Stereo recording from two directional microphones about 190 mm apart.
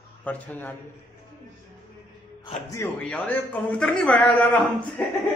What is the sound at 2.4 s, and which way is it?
A man's voice, 15° left (ahead or behind).